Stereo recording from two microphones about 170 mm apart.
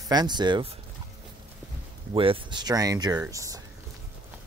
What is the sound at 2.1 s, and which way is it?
Speech, 30° right (ahead or behind).